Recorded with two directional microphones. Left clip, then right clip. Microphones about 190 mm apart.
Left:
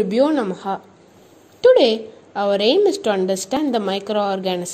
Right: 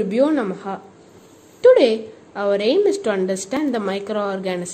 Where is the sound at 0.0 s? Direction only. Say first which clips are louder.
Left 1 dB; 25° left (ahead or behind).